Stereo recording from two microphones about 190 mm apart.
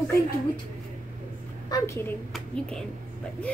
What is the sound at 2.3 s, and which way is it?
Speech, 5° left (ahead or behind).